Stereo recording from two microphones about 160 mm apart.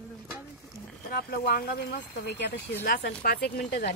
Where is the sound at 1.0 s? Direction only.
70° left (ahead or behind).